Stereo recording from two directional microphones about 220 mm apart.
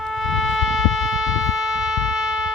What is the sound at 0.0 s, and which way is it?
Shofar, centre (ahead or behind).